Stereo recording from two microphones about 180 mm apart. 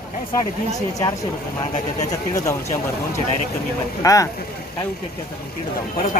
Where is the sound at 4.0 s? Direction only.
20° left (ahead or behind).